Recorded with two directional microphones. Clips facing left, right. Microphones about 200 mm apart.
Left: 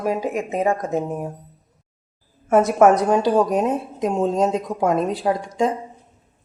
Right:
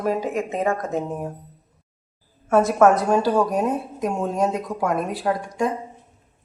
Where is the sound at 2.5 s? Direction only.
20° left (ahead or behind).